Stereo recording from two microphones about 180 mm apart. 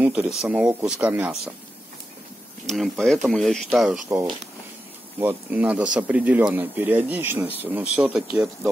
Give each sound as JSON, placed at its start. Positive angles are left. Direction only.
{"t": 0.0, "sound": "speech", "side_deg": -5}
{"t": 2.6, "sound": "speech", "side_deg": 0}
{"t": 5.2, "sound": "speech", "side_deg": -10}